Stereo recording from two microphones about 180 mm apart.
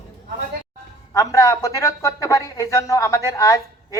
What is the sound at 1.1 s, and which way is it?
A woman's voice, 20° left (ahead or behind).